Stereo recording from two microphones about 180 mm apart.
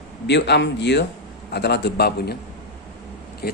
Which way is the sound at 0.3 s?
75° left (ahead or behind).